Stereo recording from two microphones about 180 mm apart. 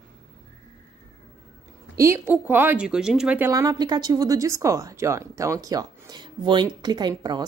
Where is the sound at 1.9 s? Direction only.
15° right (ahead or behind).